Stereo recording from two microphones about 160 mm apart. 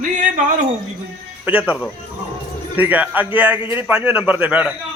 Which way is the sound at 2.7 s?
10° right (ahead or behind).